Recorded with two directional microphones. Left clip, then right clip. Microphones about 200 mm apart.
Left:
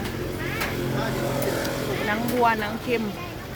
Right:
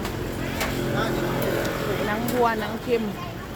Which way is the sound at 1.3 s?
40° right (ahead or behind).